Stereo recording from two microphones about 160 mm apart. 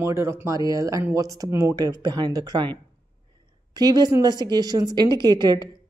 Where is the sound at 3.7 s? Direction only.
25° right (ahead or behind).